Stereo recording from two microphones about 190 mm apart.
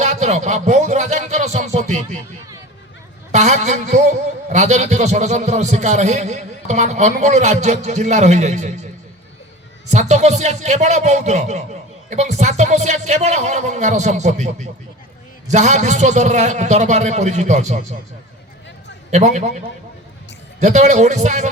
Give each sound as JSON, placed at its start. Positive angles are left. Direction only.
{"t": 0.0, "sound": "music", "side_deg": -35}
{"t": 3.3, "sound": "a man's voice", "side_deg": -35}
{"t": 19.1, "sound": "a man's voice", "side_deg": -35}